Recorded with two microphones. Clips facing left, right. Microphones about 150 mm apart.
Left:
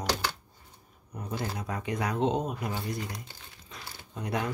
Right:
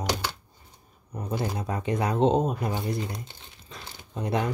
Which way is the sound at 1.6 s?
30° right (ahead or behind).